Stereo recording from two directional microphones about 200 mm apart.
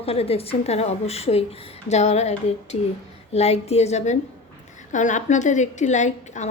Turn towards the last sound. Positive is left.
turn(degrees=35)  # may be behind; listen again after turning